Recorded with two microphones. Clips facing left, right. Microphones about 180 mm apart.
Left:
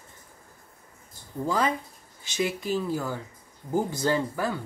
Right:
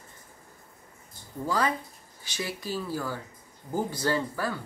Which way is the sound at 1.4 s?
20° left (ahead or behind).